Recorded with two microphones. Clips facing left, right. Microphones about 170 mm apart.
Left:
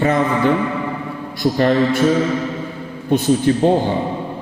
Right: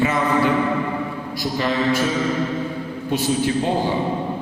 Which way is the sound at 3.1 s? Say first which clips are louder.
Left 6 dB; 50° left (ahead or behind).